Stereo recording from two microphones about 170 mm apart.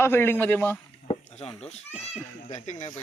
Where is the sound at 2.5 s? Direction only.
45° left (ahead or behind).